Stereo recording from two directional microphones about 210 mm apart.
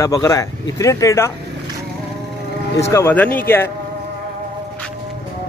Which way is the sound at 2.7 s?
15° left (ahead or behind).